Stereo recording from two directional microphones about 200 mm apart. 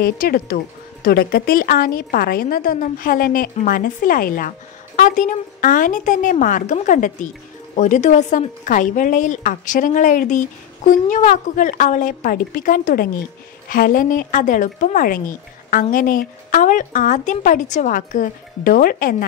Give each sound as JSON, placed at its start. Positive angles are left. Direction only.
{"t": 0.0, "sound": "a woman's voice", "side_deg": 50}